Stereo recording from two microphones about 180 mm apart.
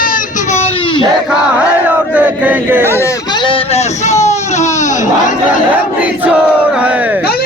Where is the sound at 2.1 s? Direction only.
10° right (ahead or behind).